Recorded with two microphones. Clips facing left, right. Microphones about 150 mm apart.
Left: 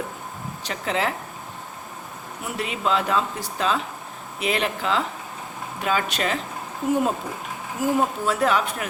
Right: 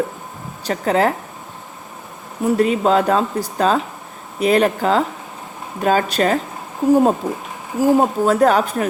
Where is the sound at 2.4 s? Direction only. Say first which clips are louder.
Right 11 dB; 40° right (ahead or behind).